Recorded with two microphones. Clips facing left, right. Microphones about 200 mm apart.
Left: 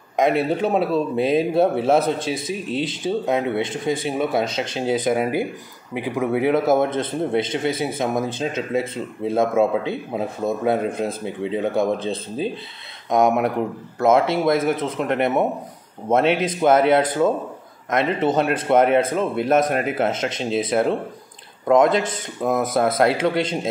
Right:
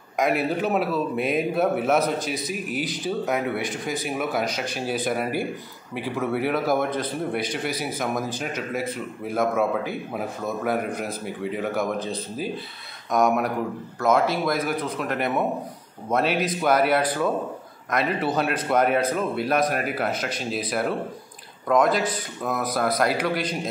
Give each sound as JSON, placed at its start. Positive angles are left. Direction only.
{"t": 0.1, "sound": "a man's voice", "side_deg": 25}